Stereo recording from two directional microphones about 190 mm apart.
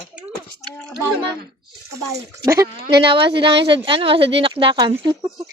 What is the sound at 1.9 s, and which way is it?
Speech, 15° right (ahead or behind).